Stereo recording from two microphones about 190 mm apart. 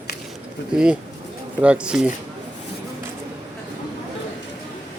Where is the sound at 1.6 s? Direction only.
5° right (ahead or behind).